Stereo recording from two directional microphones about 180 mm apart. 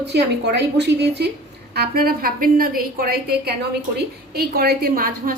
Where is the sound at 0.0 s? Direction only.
65° right (ahead or behind).